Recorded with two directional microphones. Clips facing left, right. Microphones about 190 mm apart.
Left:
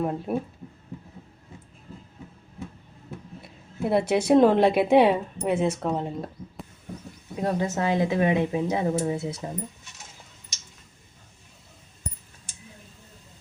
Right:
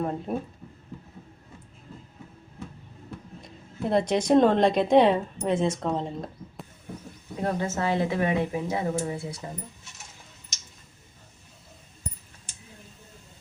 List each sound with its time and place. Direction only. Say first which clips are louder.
0.0 s a woman's voice: left 2 dB; 5° left (ahead or behind)
3.4 s a woman's voice: left 2 dB; 5° left (ahead or behind)
7.4 s a woman's voice: left 2 dB; 15° left (ahead or behind)